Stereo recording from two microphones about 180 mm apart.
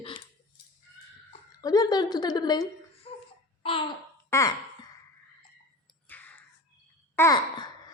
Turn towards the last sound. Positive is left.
turn(degrees=20)  # may be behind; listen again after turning